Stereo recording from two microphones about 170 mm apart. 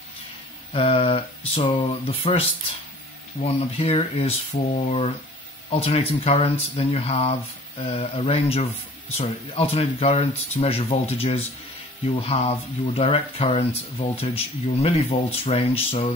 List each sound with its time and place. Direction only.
0.7 s speech: 35° left (ahead or behind)
3.4 s speech: 35° left (ahead or behind)